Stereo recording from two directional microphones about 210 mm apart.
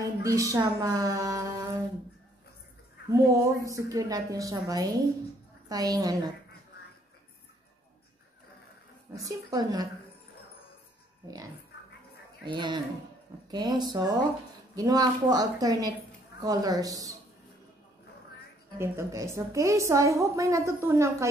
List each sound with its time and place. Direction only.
0.0 s a sound: 15° right (ahead or behind)
3.1 s a woman's voice: 15° right (ahead or behind)
9.1 s a woman's voice: 15° right (ahead or behind)
12.4 s a woman's voice: 20° right (ahead or behind)
18.8 s a woman's voice: 15° right (ahead or behind)